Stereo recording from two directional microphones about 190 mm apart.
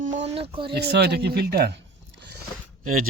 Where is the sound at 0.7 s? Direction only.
55° right (ahead or behind).